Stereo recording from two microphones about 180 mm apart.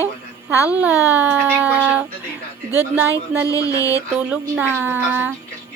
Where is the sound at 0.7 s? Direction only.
5° right (ahead or behind).